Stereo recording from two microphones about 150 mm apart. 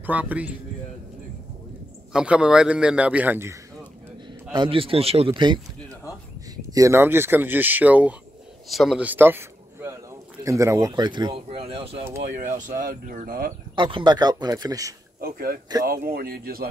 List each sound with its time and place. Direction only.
0.0 s speech: 10° right (ahead or behind)
2.1 s speech: 5° right (ahead or behind)
4.6 s a man's voice: 40° right (ahead or behind)
12.2 s speech: 55° right (ahead or behind); by 13.6 s 75° right (ahead or behind)
13.7 s speech: 35° right (ahead or behind)
15.1 s speech: 75° right (ahead or behind)